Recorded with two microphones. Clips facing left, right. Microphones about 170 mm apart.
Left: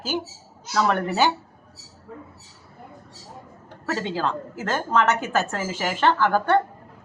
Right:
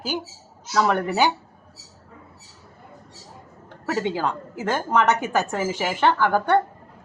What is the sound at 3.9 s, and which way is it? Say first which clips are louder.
A woman's voice: right 2 dB; 15° right (ahead or behind).